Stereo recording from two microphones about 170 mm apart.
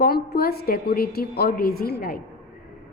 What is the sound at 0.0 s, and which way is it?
A woman's voice, 65° left (ahead or behind).